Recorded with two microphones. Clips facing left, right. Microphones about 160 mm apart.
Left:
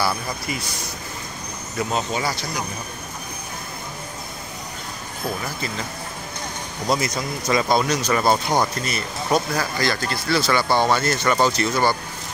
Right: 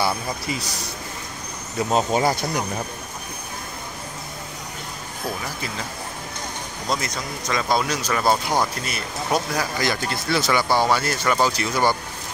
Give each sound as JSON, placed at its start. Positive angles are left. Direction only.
{"t": 1.9, "sound": "speech", "side_deg": -40}
{"t": 6.9, "sound": "speech", "side_deg": 5}
{"t": 9.8, "sound": "speech", "side_deg": -15}